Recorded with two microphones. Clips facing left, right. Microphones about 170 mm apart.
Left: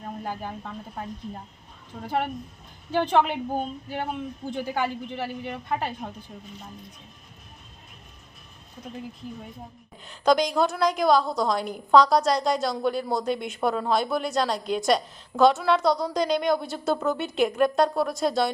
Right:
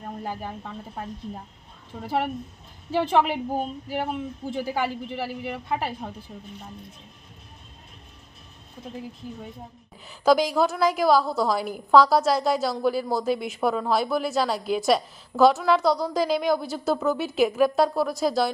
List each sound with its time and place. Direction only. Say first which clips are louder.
0.0 s a woman's voice: even; centre (ahead or behind)
10.1 s a woman's voice: right 1 dB; 5° right (ahead or behind)